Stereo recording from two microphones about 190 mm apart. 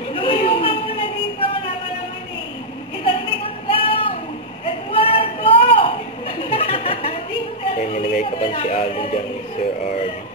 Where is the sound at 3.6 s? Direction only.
30° left (ahead or behind).